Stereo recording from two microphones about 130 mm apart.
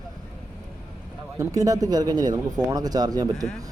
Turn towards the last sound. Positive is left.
turn(degrees=-30)  # may be behind; listen again after turning